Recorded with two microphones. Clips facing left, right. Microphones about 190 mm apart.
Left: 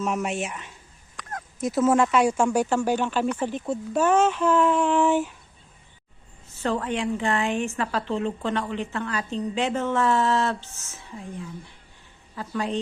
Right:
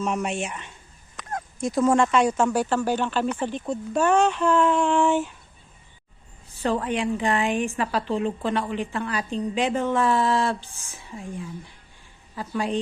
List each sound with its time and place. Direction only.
0.0 s speech: centre (ahead or behind)
1.1 s a sound: 25° right (ahead or behind)
1.5 s speech: 5° left (ahead or behind)
6.6 s a woman's voice: 15° right (ahead or behind)